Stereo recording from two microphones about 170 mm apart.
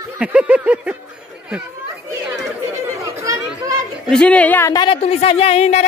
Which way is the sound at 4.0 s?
5° left (ahead or behind).